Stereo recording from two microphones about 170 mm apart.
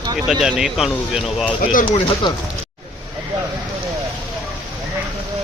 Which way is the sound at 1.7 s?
50° left (ahead or behind).